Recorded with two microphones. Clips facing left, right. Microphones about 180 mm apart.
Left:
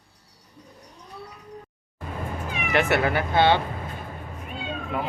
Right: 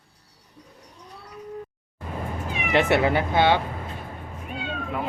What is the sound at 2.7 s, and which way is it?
Speech, 20° right (ahead or behind).